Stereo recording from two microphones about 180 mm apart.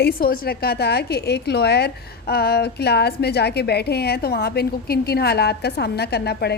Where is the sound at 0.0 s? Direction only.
55° left (ahead or behind).